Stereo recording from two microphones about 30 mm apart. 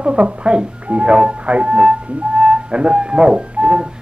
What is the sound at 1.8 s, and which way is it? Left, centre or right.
Speech, right.